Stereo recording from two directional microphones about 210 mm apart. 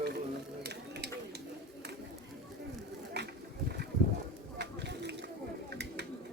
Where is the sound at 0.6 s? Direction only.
50° right (ahead or behind).